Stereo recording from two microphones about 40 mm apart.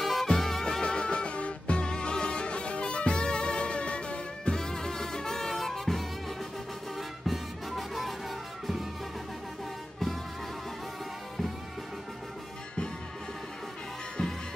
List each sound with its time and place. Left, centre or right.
0.0 s music: centre
0.7 s music: left; by 8.1 s centre